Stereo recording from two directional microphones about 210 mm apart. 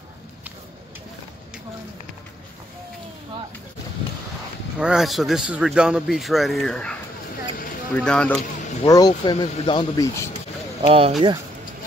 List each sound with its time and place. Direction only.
4.7 s a man's voice: 5° right (ahead or behind)
8.8 s speech: 20° left (ahead or behind)
10.8 s speech: 25° right (ahead or behind)